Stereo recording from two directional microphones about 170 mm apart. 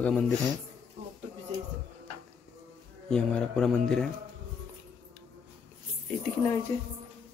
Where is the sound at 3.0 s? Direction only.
5° left (ahead or behind).